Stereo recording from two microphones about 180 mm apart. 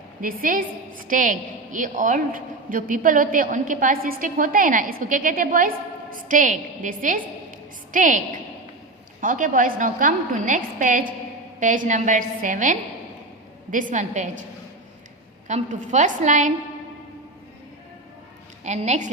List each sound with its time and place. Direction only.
0.2 s a woman's voice: 50° right (ahead or behind)
9.2 s a woman's voice: 50° right (ahead or behind)
15.4 s a woman's voice: 40° right (ahead or behind)
18.6 s a woman's voice: 40° right (ahead or behind)